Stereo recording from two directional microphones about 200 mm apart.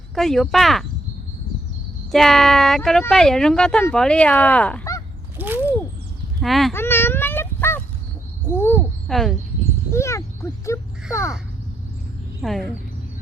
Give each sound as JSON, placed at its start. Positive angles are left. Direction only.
{"t": 0.1, "sound": "speech", "side_deg": 0}
{"t": 2.1, "sound": "speech", "side_deg": 0}
{"t": 5.4, "sound": "mechanisms", "side_deg": -10}
{"t": 6.4, "sound": "speech", "side_deg": 0}
{"t": 6.7, "sound": "a sound", "side_deg": 10}
{"t": 8.4, "sound": "speech", "side_deg": 10}
{"t": 9.9, "sound": "speech", "side_deg": 15}
{"t": 11.1, "sound": "crow", "side_deg": 15}
{"t": 12.4, "sound": "speech", "side_deg": 0}